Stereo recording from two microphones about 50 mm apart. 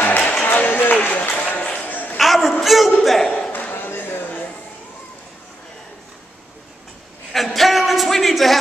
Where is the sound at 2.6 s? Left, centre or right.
Centre.